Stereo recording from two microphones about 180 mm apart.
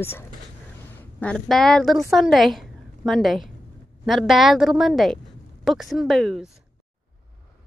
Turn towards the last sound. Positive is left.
turn(degrees=0)  # may be behind; listen again after turning